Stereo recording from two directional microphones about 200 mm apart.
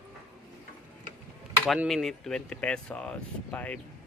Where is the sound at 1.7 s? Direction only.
Centre (ahead or behind).